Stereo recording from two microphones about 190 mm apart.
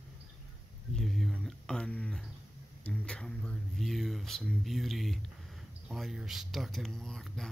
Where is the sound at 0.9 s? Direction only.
Centre (ahead or behind).